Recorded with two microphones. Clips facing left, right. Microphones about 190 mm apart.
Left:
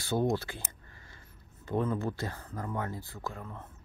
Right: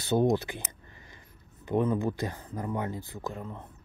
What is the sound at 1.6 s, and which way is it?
Speech, 15° right (ahead or behind).